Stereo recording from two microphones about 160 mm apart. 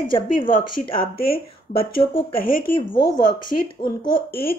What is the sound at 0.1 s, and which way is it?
Speech, 30° left (ahead or behind).